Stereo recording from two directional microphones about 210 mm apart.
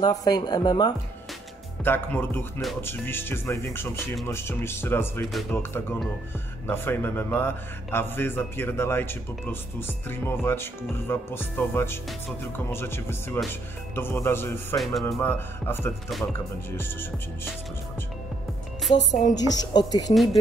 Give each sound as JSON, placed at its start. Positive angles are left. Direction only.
{"t": 0.0, "sound": "a man's voice", "side_deg": 20}
{"t": 12.1, "sound": "speech", "side_deg": 0}
{"t": 12.7, "sound": "a man's voice", "side_deg": 10}
{"t": 14.8, "sound": "speech", "side_deg": 0}
{"t": 15.0, "sound": "a man's voice", "side_deg": 10}
{"t": 19.2, "sound": "a man's voice", "side_deg": 20}